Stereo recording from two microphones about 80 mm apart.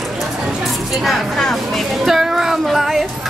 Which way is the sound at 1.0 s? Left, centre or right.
Centre.